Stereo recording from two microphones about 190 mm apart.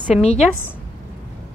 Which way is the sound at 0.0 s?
35° left (ahead or behind).